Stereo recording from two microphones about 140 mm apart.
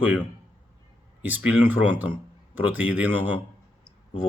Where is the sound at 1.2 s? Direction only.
10° right (ahead or behind).